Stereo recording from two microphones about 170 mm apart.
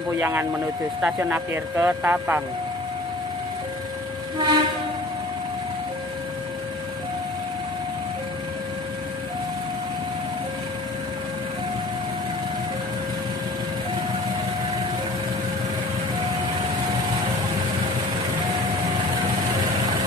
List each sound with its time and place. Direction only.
0.2 s speech: 15° right (ahead or behind)
4.4 s train: 25° right (ahead or behind)